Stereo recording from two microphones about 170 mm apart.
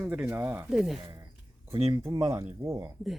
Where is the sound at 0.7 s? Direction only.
Centre (ahead or behind).